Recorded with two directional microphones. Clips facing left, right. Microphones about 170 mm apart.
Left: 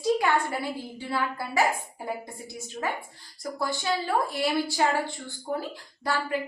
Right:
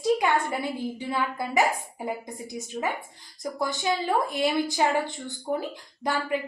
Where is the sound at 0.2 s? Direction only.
20° right (ahead or behind).